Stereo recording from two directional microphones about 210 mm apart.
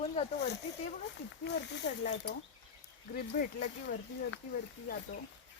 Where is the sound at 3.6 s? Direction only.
55° left (ahead or behind).